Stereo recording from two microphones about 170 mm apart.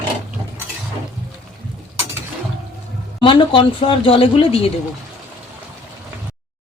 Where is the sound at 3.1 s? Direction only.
30° left (ahead or behind).